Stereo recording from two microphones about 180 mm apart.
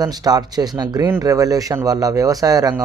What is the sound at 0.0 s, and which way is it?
A man's voice, 20° right (ahead or behind).